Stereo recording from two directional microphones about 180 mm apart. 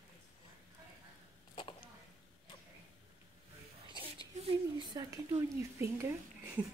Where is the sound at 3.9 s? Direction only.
25° right (ahead or behind).